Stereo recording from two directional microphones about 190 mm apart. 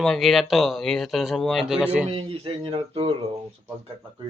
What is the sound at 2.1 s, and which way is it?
Speech, 30° right (ahead or behind).